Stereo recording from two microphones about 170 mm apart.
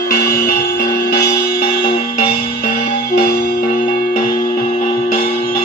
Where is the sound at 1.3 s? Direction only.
65° left (ahead or behind).